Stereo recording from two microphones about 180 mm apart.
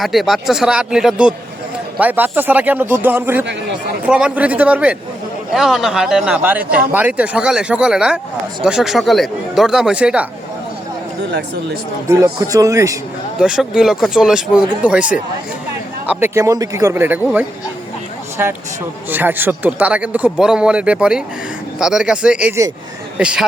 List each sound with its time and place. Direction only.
0.0 s a man's voice: centre (ahead or behind)
12.0 s a man's voice: 20° right (ahead or behind)
13.4 s a man's voice: 5° right (ahead or behind)
19.1 s a man's voice: 10° right (ahead or behind)